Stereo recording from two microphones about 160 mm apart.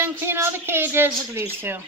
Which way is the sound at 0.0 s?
15° right (ahead or behind).